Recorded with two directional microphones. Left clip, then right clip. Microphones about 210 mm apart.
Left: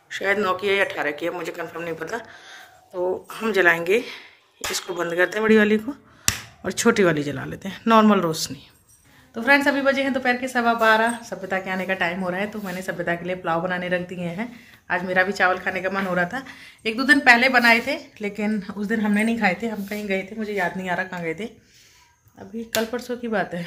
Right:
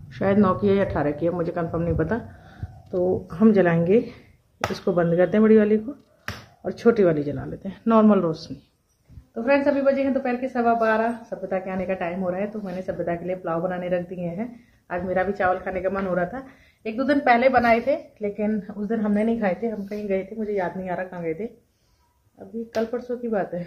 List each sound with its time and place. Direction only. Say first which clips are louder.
0.1 s a woman's voice: even; 20° left (ahead or behind)
22.8 s a woman's voice: left 1 dB; 20° left (ahead or behind)